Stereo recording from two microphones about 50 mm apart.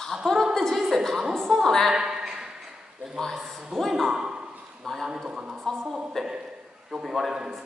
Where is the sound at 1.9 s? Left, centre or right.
Centre.